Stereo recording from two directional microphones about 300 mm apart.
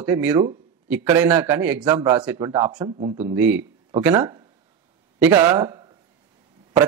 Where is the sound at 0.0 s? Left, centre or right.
Centre.